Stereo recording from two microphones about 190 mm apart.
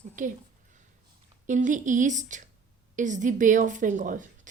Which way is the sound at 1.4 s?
40° right (ahead or behind).